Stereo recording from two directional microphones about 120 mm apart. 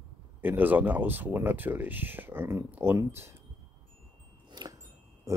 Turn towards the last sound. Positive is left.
turn(degrees=-35)  # may be behind; listen again after turning